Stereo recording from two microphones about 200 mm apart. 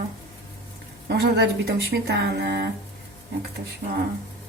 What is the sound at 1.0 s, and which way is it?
Speech, 50° right (ahead or behind).